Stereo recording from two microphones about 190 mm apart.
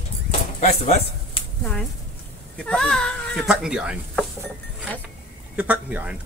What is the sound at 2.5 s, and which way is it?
Speech, 5° left (ahead or behind).